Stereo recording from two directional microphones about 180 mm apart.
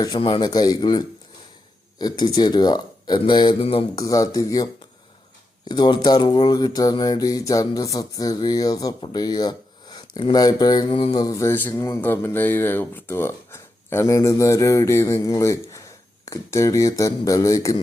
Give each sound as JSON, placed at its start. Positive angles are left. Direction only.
{"t": 0.0, "sound": "speech", "side_deg": 25}
{"t": 3.9, "sound": "speech", "side_deg": 20}